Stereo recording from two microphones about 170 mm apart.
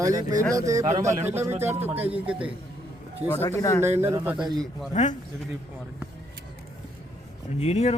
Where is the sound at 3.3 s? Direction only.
15° left (ahead or behind).